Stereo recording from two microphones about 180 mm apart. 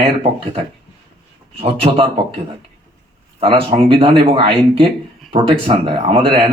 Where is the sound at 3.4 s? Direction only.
30° right (ahead or behind).